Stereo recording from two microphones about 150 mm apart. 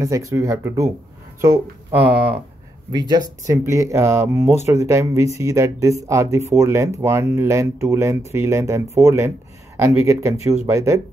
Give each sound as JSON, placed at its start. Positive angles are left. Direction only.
{"t": 0.0, "sound": "speech", "side_deg": -20}
{"t": 2.9, "sound": "speech", "side_deg": -25}